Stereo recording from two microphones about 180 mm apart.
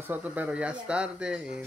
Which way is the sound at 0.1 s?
10° right (ahead or behind).